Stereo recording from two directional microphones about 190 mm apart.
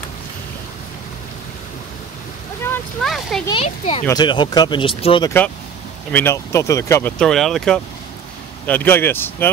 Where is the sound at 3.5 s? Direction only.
30° left (ahead or behind).